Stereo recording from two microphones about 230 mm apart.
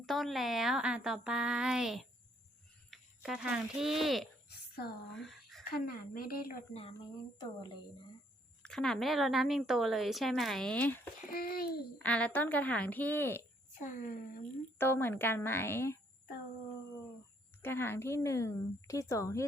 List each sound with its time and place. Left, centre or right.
0.0 s speech: centre
4.7 s a woman's voice: left
5.1 s a sound: centre
5.6 s a woman's voice: left
6.7 s speech: left
8.6 s speech: centre
11.3 s a woman's voice: left
12.0 s a woman's voice: centre
13.8 s a woman's voice: left
14.8 s a woman's voice: centre
17.6 s a woman's voice: centre